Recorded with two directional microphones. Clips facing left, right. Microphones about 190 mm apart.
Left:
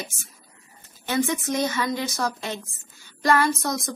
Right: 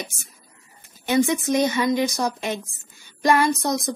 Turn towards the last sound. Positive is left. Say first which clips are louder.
# right 3 dB
turn(degrees=-20)  # may be behind; listen again after turning